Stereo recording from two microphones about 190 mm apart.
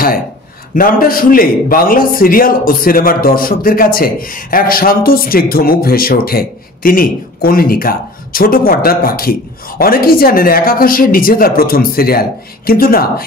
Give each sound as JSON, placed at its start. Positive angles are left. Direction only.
{"t": 0.7, "sound": "a man's voice", "side_deg": 50}